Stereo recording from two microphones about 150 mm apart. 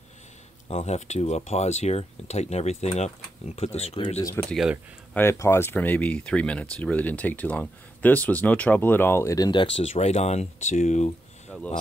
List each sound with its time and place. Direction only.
0.7 s speech: 45° left (ahead or behind)
5.1 s speech: 15° left (ahead or behind); by 11.1 s 55° left (ahead or behind)
11.5 s speech: 5° left (ahead or behind)